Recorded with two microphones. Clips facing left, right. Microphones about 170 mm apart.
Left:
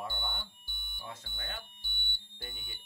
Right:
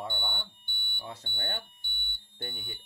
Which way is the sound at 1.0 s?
35° right (ahead or behind).